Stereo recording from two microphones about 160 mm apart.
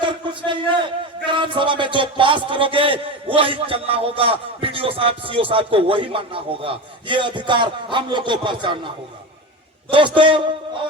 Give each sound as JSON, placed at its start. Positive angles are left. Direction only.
{"t": 0.0, "sound": "a man's voice", "side_deg": -30}
{"t": 9.9, "sound": "a man's voice", "side_deg": -30}